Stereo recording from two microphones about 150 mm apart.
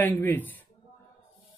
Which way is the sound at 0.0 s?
15° left (ahead or behind).